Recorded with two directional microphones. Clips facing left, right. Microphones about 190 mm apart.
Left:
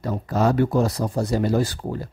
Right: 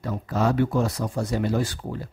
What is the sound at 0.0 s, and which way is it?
Speech, 40° left (ahead or behind).